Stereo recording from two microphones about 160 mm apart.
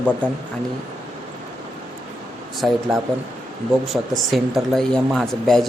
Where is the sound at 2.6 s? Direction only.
5° right (ahead or behind).